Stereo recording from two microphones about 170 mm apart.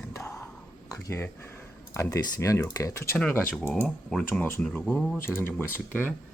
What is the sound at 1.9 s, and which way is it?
Speech, 20° left (ahead or behind).